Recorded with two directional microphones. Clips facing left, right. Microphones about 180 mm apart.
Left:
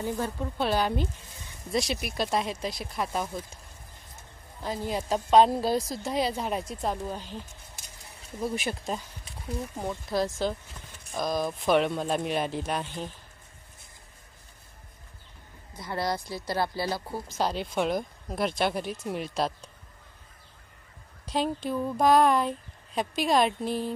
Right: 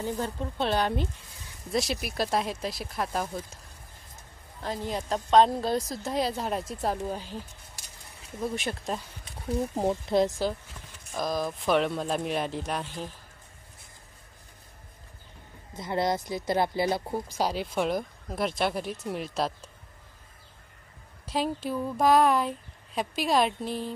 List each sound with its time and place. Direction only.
0.0 s a woman's voice: 20° right (ahead or behind)
0.7 s speech: 5° left (ahead or behind)
4.6 s speech: 5° left (ahead or behind)
8.4 s speech: 5° left (ahead or behind)
9.8 s speech: 30° right (ahead or behind)
11.1 s speech: centre (ahead or behind)
15.7 s speech: 20° right (ahead or behind)
17.4 s speech: 5° right (ahead or behind)
21.3 s speech: 5° right (ahead or behind)